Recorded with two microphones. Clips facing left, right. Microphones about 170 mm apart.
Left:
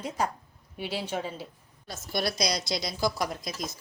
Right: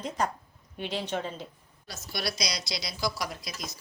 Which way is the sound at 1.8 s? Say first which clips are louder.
Left 4 dB; 50° left (ahead or behind).